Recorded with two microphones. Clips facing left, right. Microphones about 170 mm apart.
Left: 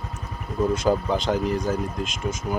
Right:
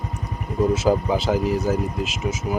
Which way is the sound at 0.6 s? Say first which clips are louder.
Right 2 dB; 5° right (ahead or behind).